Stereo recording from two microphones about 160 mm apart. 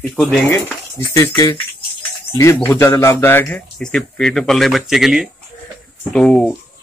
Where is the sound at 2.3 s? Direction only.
20° left (ahead or behind).